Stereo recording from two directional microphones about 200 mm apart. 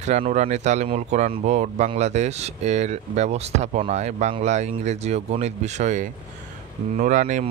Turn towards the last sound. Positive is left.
turn(degrees=-40)  # may be behind; listen again after turning